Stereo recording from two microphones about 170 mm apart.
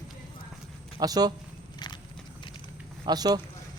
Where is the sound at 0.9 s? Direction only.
20° right (ahead or behind).